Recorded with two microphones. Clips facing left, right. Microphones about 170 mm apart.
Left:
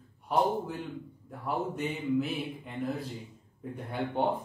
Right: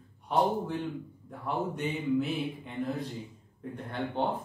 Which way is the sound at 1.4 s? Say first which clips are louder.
Even; centre (ahead or behind).